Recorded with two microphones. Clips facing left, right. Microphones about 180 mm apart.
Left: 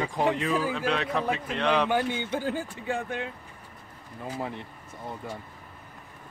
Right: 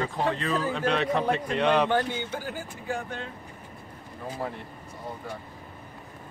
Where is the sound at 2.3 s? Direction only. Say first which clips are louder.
Left 5 dB; 25° left (ahead or behind).